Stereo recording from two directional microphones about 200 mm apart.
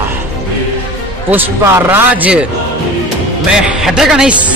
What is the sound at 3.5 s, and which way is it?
Speech, 5° right (ahead or behind).